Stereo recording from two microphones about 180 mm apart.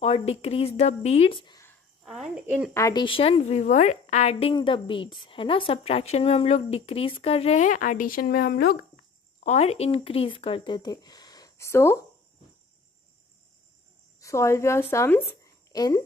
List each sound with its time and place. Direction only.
0.0 s a woman's voice: 35° left (ahead or behind)
2.0 s a sound: centre (ahead or behind)
2.4 s speech: 10° right (ahead or behind)
2.7 s a woman's voice: 20° left (ahead or behind); by 8.7 s 55° left (ahead or behind)
9.4 s speech: 35° left (ahead or behind); by 12.0 s 15° left (ahead or behind)
14.2 s a woman's voice: 15° left (ahead or behind)